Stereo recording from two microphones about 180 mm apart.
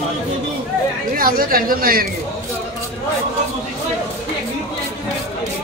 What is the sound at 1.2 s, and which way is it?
Speech, 55° right (ahead or behind).